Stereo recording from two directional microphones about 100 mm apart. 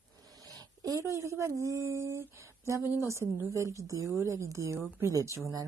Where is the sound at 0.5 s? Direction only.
35° right (ahead or behind).